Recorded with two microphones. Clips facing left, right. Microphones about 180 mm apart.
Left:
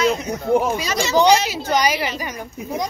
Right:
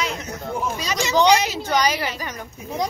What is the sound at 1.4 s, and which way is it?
A woman's voice, 10° left (ahead or behind).